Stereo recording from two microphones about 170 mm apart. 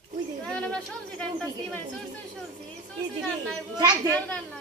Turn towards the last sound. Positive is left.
turn(degrees=5)  # may be behind; listen again after turning